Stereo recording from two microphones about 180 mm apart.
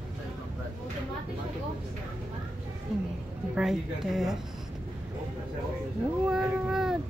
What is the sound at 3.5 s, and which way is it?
Speech, centre (ahead or behind).